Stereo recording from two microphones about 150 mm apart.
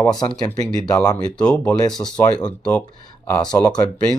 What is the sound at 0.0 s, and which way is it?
Speech, 25° left (ahead or behind).